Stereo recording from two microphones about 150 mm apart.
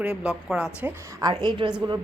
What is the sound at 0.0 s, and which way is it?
Speech, 5° right (ahead or behind).